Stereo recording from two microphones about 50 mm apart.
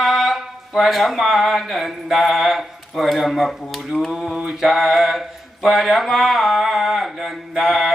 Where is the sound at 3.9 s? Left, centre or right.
Centre.